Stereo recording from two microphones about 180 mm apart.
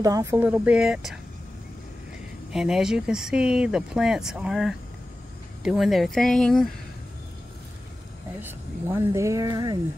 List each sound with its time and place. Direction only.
0.0 s speech: 15° right (ahead or behind)
2.5 s speech: 5° right (ahead or behind)
8.4 s speech: 10° right (ahead or behind)